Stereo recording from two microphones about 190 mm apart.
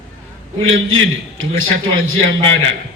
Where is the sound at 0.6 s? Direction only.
90° right.